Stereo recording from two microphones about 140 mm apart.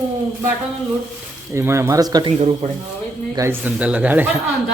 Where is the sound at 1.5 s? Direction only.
20° right (ahead or behind).